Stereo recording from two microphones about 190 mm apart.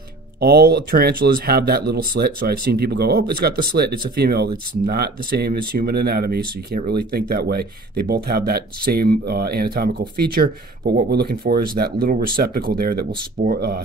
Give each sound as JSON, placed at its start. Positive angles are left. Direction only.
{"t": 0.4, "sound": "speech", "side_deg": -55}